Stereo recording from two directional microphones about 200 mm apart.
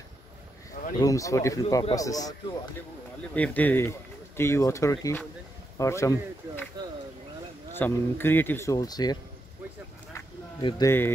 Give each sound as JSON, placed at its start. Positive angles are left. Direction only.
{"t": 0.9, "sound": "speech", "side_deg": 15}
{"t": 3.3, "sound": "speech", "side_deg": 5}
{"t": 7.7, "sound": "speech", "side_deg": 10}
{"t": 10.1, "sound": "a sound", "side_deg": 15}